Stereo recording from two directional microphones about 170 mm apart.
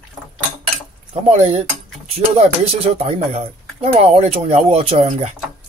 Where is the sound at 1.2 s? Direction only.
40° right (ahead or behind).